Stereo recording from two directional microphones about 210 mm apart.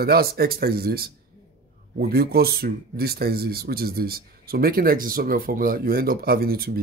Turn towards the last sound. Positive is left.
turn(degrees=-45)  # may be behind; listen again after turning